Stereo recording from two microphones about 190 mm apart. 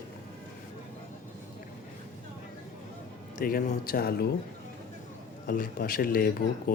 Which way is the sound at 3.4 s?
50° left (ahead or behind).